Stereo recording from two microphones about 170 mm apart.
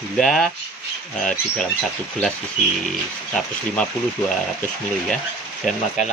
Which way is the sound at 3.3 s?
5° left (ahead or behind).